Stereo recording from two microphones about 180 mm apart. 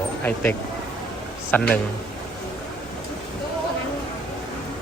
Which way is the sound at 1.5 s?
10° left (ahead or behind).